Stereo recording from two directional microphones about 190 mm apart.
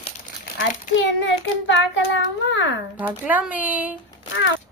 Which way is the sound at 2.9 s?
10° right (ahead or behind).